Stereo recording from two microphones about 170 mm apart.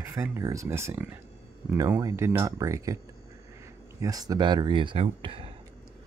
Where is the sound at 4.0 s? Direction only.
20° right (ahead or behind).